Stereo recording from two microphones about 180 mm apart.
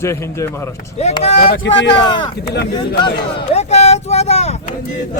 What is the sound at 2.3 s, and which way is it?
Speech, 65° left (ahead or behind).